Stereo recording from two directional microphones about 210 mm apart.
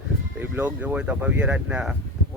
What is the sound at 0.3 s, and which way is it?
Speech, 10° right (ahead or behind).